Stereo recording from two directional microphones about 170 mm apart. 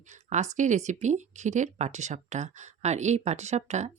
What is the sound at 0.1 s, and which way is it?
Speech, 45° right (ahead or behind).